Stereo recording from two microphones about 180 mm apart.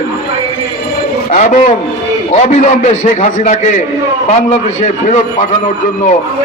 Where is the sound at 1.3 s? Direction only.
45° left (ahead or behind).